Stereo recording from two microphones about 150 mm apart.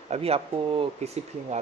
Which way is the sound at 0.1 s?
40° right (ahead or behind).